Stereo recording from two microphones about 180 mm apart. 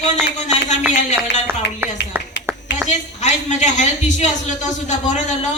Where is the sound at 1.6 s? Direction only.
70° left (ahead or behind).